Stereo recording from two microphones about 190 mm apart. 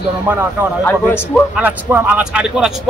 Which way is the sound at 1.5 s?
10° right (ahead or behind).